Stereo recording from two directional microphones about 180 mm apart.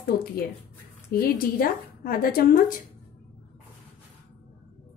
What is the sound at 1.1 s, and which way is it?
A woman's voice, 55° left (ahead or behind).